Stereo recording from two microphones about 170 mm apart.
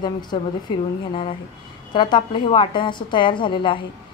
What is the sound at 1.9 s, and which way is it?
A woman's voice, 25° left (ahead or behind).